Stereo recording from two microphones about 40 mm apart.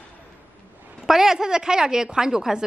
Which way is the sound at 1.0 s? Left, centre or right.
Centre.